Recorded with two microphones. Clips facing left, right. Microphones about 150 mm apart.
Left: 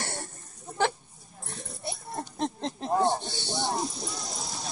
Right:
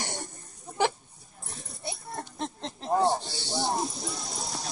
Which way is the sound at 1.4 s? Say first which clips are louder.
Left 2 dB; centre (ahead or behind).